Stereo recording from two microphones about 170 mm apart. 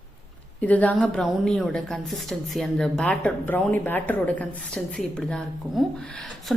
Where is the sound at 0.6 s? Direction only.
10° left (ahead or behind).